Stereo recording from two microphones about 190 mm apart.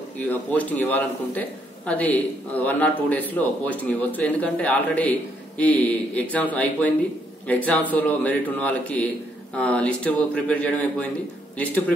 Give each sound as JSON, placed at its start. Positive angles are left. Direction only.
{"t": 0.3, "sound": "speech", "side_deg": 10}